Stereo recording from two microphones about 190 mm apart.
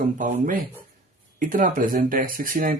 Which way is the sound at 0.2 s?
40° right (ahead or behind).